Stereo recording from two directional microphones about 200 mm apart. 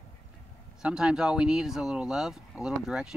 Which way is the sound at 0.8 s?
5° right (ahead or behind).